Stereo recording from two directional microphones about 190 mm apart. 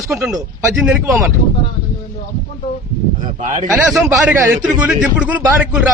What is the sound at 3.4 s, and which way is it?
Speech, 40° right (ahead or behind).